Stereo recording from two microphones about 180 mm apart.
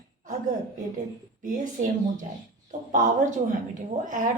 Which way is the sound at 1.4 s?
45° right (ahead or behind).